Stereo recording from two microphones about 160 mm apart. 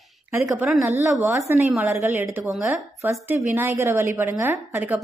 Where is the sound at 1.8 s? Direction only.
10° right (ahead or behind).